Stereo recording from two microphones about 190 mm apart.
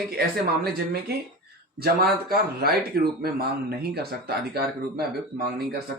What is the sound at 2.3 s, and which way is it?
Speech, 55° right (ahead or behind).